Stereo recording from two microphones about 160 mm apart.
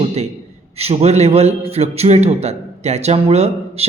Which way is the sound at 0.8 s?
40° right (ahead or behind).